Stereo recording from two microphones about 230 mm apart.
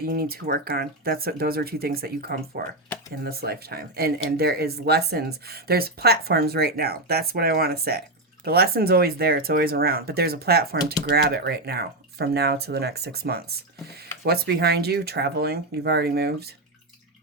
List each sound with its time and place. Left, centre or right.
0.0 s speech: right